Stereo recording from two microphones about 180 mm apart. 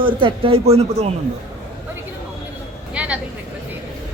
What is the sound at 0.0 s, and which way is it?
Speech, 30° right (ahead or behind).